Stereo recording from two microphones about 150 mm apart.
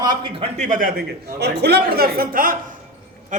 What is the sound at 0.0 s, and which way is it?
Speech, 30° right (ahead or behind).